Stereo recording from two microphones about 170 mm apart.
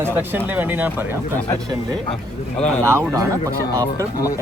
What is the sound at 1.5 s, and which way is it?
Speech, 20° right (ahead or behind).